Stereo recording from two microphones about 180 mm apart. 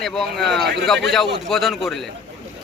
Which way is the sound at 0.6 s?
70° right (ahead or behind).